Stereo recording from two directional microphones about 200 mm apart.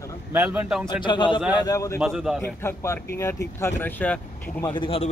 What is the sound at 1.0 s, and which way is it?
Speech, 25° left (ahead or behind).